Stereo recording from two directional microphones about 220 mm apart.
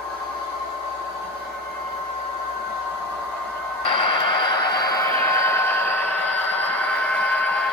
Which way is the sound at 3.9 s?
20° left (ahead or behind).